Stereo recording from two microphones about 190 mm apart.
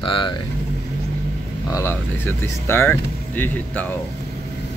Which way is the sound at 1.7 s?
10° left (ahead or behind).